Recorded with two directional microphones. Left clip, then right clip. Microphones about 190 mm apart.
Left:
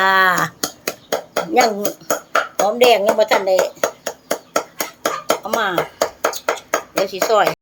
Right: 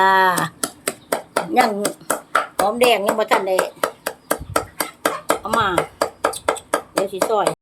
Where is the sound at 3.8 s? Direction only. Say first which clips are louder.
Left 2 dB; 25° right (ahead or behind).